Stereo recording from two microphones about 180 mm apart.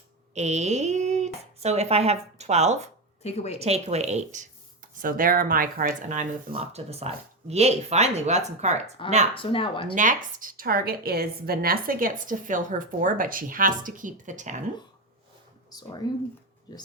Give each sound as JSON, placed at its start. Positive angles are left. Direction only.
{"t": 0.3, "sound": "speech", "side_deg": -40}
{"t": 3.2, "sound": "a woman's voice", "side_deg": 35}
{"t": 3.6, "sound": "a woman's voice", "side_deg": -35}
{"t": 6.5, "sound": "speech", "side_deg": -35}
{"t": 9.3, "sound": "speech", "side_deg": 30}
{"t": 9.9, "sound": "a woman's voice", "side_deg": -45}
{"t": 15.7, "sound": "speech", "side_deg": 25}